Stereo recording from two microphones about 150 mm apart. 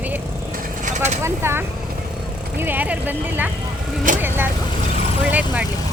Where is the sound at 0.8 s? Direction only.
50° right (ahead or behind).